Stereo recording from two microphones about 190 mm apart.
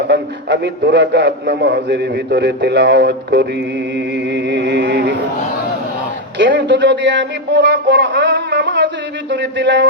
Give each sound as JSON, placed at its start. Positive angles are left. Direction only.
{"t": 0.1, "sound": "a man's voice", "side_deg": -65}
{"t": 6.4, "sound": "music", "side_deg": -70}